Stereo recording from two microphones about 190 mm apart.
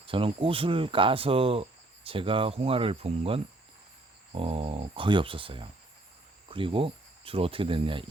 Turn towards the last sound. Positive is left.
turn(degrees=-25)  # may be behind; listen again after turning